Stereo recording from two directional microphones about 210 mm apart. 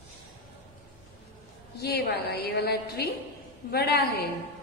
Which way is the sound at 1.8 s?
50° left (ahead or behind).